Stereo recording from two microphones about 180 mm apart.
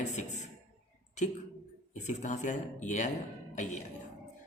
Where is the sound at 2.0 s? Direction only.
40° left (ahead or behind).